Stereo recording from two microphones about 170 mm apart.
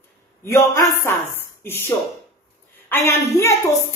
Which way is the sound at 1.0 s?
15° left (ahead or behind).